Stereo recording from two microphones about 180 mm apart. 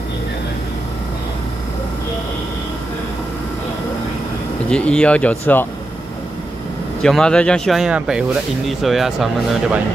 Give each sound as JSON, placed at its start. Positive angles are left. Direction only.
{"t": 4.6, "sound": "speech", "side_deg": 5}
{"t": 7.0, "sound": "speech", "side_deg": 5}